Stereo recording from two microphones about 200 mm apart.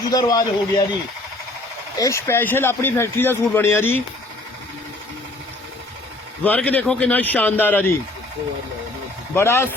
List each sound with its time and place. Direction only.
0.0 s a man's voice: 20° left (ahead or behind)
2.0 s a man's voice: 15° left (ahead or behind)
6.4 s a man's voice: 10° left (ahead or behind)
9.3 s a man's voice: 10° left (ahead or behind)